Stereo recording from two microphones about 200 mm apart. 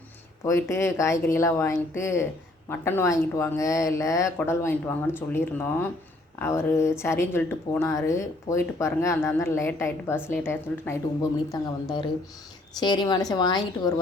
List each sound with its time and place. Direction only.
0.4 s a woman's voice: 15° left (ahead or behind)